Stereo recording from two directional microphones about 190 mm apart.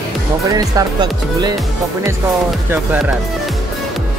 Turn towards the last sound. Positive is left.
turn(degrees=-10)  # may be behind; listen again after turning